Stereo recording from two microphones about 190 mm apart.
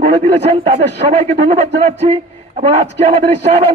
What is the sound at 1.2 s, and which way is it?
A man's voice, 35° right (ahead or behind).